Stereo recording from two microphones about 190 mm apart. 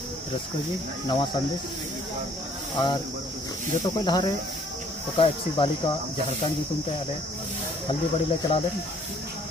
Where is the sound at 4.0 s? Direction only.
25° left (ahead or behind).